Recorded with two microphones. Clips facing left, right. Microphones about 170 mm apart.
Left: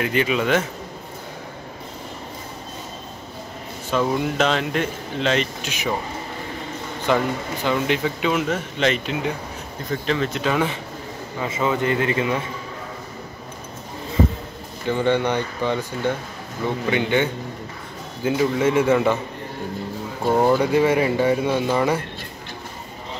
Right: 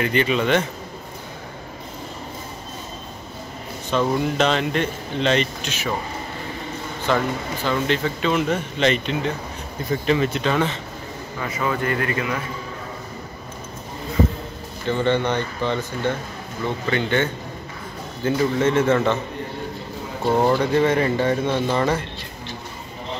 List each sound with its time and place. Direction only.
0.0 s speech: 5° left (ahead or behind)
3.9 s speech: 5° left (ahead or behind)
7.1 s speech: 15° left (ahead or behind)
9.8 s speech: 10° right (ahead or behind)
10.4 s speech: 10° left (ahead or behind)
11.3 s a man's voice: 25° left (ahead or behind)
14.9 s speech: 10° left (ahead or behind)
20.2 s speech: 10° left (ahead or behind)